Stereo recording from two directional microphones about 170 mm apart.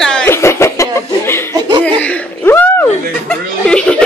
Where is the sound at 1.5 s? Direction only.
25° right (ahead or behind).